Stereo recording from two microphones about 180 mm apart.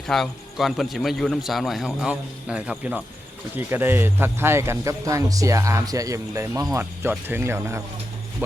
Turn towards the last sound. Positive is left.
turn(degrees=-15)  # may be behind; listen again after turning